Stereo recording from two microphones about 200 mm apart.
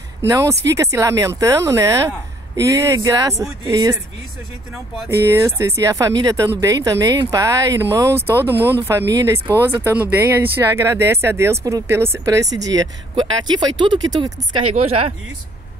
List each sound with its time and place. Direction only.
0.3 s a woman's voice: 15° right (ahead or behind)
5.2 s a woman's voice: 15° right (ahead or behind)
14.8 s speech: 30° right (ahead or behind)